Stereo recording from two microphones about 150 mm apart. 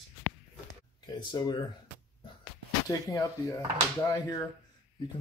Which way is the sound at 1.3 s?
30° left (ahead or behind).